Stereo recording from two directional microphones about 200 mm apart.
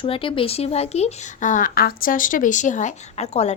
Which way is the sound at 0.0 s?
25° left (ahead or behind).